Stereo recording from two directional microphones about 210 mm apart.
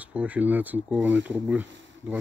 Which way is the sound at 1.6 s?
60° right (ahead or behind).